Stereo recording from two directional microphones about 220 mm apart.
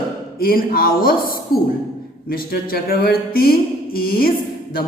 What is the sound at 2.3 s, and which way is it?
A woman's voice, 40° left (ahead or behind).